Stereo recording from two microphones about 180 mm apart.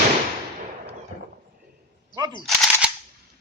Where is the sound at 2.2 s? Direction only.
25° right (ahead or behind).